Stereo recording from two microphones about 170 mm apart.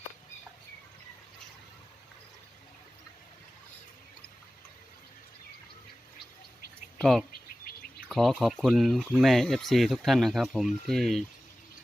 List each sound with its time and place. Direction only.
7.0 s speech: centre (ahead or behind)
7.4 s bird: 55° left (ahead or behind)
8.1 s speech: centre (ahead or behind)